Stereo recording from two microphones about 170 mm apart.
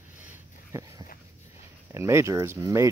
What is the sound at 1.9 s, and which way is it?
Speech, 15° right (ahead or behind).